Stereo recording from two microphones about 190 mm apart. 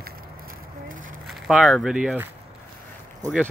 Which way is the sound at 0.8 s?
45° right (ahead or behind).